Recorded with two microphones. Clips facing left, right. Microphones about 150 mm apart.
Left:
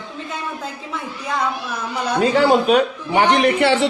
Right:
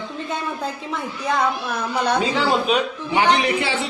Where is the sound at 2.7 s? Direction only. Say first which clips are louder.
Left 5 dB; 50° left (ahead or behind); by 3.9 s 70° left (ahead or behind).